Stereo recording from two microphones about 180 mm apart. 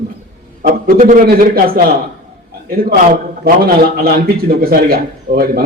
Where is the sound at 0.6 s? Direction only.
50° right (ahead or behind).